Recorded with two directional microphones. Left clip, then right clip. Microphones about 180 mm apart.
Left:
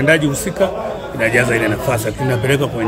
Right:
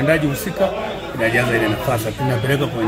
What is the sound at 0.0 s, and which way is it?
A man's voice, 30° left (ahead or behind).